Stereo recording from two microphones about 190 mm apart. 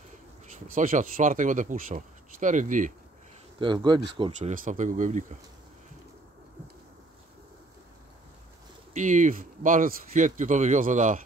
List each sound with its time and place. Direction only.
0.7 s speech: 45° right (ahead or behind)
3.5 s speech: 25° right (ahead or behind)
4.4 s speech: 40° right (ahead or behind)
8.9 s speech: 40° right (ahead or behind)